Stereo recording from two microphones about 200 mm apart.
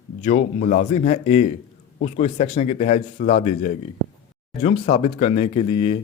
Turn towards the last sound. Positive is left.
turn(degrees=30)  # may be behind; listen again after turning